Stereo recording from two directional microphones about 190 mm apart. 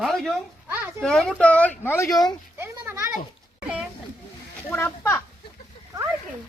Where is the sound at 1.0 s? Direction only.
Centre (ahead or behind).